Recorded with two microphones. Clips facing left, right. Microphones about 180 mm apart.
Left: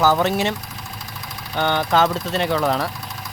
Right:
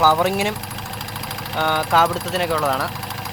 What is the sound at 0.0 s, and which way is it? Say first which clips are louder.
Speech: even; 10° right (ahead or behind).